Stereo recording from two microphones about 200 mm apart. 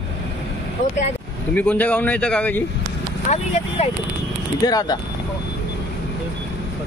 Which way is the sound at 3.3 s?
35° left (ahead or behind).